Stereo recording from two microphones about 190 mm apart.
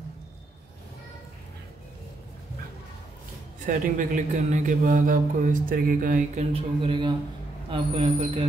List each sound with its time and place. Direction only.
3.6 s speech: 45° right (ahead or behind)
6.5 s speech: 30° right (ahead or behind)